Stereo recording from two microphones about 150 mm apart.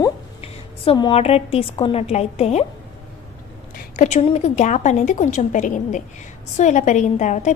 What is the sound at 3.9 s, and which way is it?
A woman's voice, 50° left (ahead or behind).